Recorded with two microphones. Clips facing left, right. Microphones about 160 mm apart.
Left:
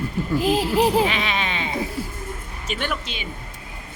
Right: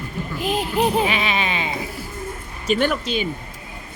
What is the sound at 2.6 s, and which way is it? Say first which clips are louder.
Speech: right 8 dB; 40° right (ahead or behind).